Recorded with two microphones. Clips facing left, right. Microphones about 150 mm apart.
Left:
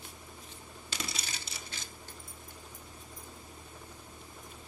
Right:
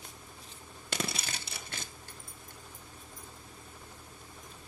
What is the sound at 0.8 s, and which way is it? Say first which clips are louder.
Crushing: right 5 dB; 55° right (ahead or behind).